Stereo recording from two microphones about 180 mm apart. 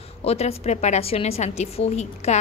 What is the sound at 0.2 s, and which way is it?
A woman's voice, 35° left (ahead or behind).